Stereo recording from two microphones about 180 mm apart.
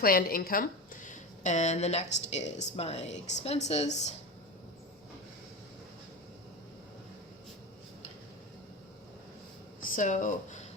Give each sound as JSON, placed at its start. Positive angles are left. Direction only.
{"t": 0.0, "sound": "a woman's voice", "side_deg": 55}
{"t": 9.8, "sound": "speech", "side_deg": 45}